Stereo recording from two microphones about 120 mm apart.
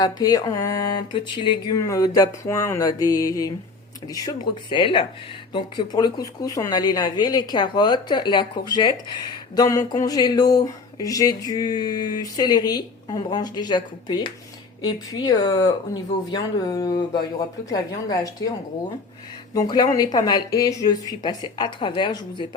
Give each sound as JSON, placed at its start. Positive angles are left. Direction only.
{"t": 0.0, "sound": "speech", "side_deg": 30}
{"t": 1.8, "sound": "mantra", "side_deg": 30}
{"t": 4.1, "sound": "speech", "side_deg": 30}
{"t": 19.5, "sound": "speech", "side_deg": 35}